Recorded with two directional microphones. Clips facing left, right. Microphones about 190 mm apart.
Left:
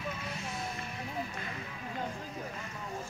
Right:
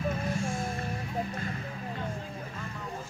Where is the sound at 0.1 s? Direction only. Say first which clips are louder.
Right 8 dB; 50° right (ahead or behind).